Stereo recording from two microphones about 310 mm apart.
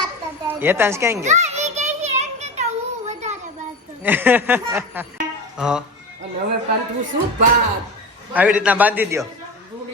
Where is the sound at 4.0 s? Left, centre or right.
Centre.